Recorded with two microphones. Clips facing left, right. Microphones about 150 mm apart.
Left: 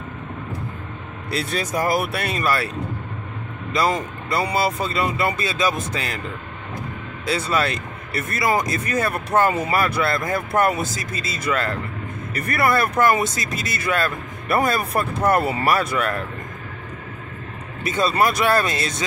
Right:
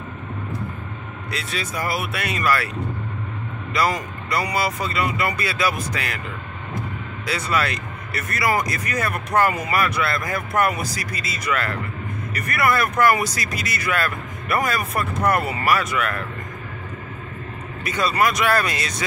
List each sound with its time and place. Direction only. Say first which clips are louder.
1.3 s speech: left 5 dB; 35° left (ahead or behind)
3.7 s speech: left 1 dB; 25° left (ahead or behind)
7.2 s speech: left 2 dB; 30° left (ahead or behind)
17.8 s speech: left 1 dB; 25° left (ahead or behind)